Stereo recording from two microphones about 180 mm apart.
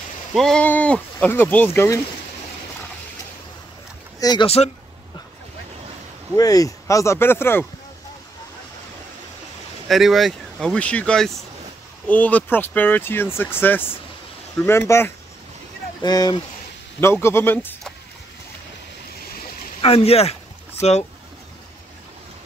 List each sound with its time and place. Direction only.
0.3 s speech: centre (ahead or behind)
4.2 s speech: 20° left (ahead or behind)
6.3 s speech: 20° left (ahead or behind)
9.8 s speech: centre (ahead or behind)
19.8 s speech: 35° left (ahead or behind)